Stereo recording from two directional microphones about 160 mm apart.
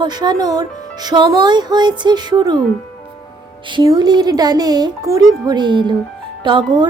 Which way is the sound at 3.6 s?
25° right (ahead or behind).